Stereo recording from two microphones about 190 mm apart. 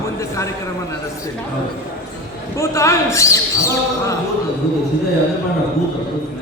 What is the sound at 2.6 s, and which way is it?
Speech, 15° left (ahead or behind).